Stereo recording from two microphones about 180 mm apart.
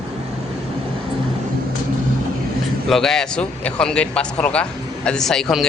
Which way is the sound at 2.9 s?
5° left (ahead or behind).